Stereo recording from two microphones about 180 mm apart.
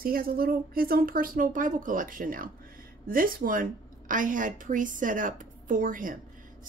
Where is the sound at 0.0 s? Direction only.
55° right (ahead or behind).